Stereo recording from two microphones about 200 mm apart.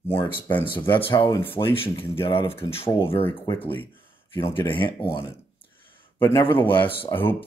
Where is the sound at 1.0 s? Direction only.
20° left (ahead or behind).